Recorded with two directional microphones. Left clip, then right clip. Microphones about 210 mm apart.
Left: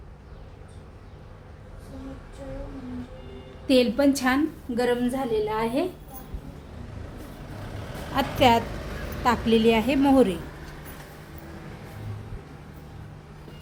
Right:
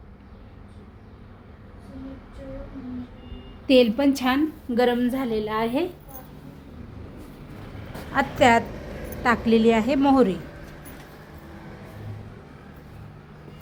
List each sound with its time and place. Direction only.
3.7 s a woman's voice: 5° right (ahead or behind)
4.7 s a woman's voice: 20° right (ahead or behind)
8.1 s a woman's voice: centre (ahead or behind)